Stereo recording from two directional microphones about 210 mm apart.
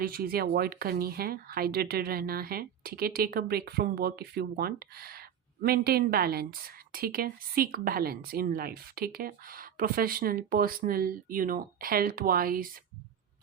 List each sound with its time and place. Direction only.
0.0 s a woman's voice: 45° right (ahead or behind)